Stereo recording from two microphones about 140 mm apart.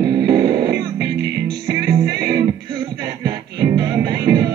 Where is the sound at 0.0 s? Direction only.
30° right (ahead or behind).